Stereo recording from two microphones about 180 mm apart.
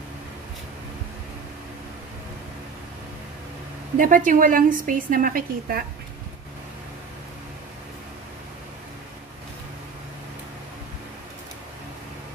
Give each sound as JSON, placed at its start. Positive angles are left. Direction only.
{"t": 4.0, "sound": "a woman's voice", "side_deg": -50}